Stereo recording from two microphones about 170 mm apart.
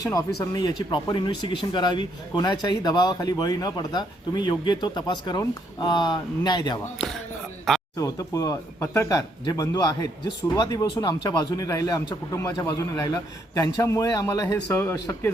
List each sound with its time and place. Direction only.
0.0 s speech: 20° left (ahead or behind)
7.9 s speech: 20° left (ahead or behind)